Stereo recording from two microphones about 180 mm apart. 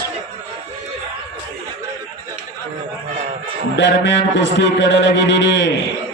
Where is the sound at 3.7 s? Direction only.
80° left.